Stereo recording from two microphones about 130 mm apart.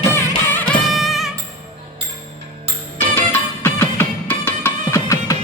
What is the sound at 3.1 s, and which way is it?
Music, 15° left (ahead or behind).